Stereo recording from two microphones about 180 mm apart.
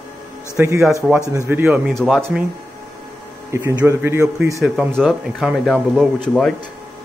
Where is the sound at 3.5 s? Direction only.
15° right (ahead or behind).